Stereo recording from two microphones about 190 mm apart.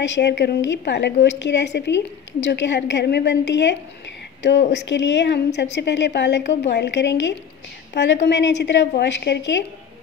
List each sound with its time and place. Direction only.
0.0 s a woman's voice: 65° left (ahead or behind)